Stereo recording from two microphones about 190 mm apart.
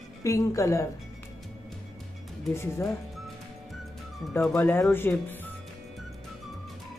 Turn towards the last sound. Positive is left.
turn(degrees=10)  # may be behind; listen again after turning